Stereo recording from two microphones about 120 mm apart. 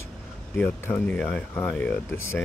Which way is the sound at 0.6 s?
10° left (ahead or behind).